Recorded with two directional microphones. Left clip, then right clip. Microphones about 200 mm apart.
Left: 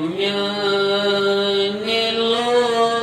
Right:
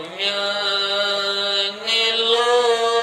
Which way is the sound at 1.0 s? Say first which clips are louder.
Left 3 dB; 50° right (ahead or behind).